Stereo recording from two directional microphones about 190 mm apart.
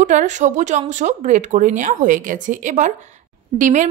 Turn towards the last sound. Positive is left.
turn(degrees=-40)  # may be behind; listen again after turning